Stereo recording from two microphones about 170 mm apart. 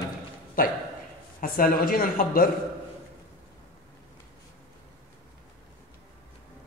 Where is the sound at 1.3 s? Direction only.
55° left (ahead or behind).